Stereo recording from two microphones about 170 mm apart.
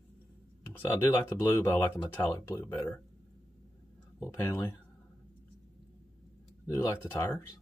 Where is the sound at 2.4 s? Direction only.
15° left (ahead or behind).